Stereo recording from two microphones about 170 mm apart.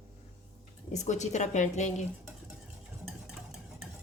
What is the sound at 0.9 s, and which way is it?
A woman's voice, 45° left (ahead or behind).